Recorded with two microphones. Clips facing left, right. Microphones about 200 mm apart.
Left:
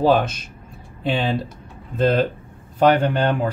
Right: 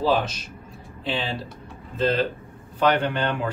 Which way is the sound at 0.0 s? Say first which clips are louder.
Left 5 dB; 55° left (ahead or behind).